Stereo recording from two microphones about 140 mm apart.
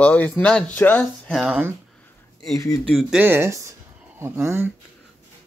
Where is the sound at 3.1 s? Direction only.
15° right (ahead or behind).